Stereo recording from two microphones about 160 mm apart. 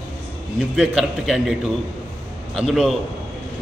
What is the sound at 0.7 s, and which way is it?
A man's voice, 5° right (ahead or behind).